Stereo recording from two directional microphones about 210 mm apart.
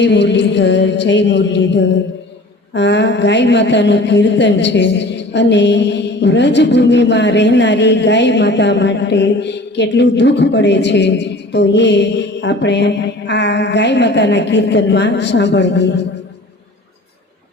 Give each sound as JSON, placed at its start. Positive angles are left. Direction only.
{"t": 0.0, "sound": "a woman's voice", "side_deg": 55}